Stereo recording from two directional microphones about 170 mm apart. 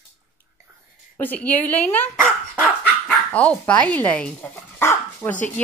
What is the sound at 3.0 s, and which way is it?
A woman's voice, 5° left (ahead or behind).